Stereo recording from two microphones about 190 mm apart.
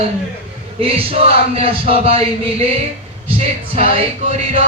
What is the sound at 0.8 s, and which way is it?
Speech, 30° right (ahead or behind).